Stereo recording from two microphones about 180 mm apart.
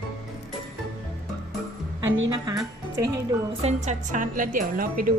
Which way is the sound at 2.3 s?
20° right (ahead or behind).